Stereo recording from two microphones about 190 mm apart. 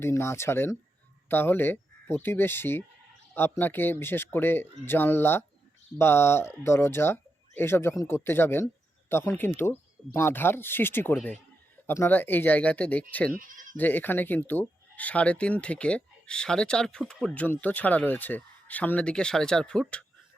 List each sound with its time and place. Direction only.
0.0 s speech: 15° left (ahead or behind)
13.4 s speech: 45° right (ahead or behind)
13.7 s speech: 10° left (ahead or behind)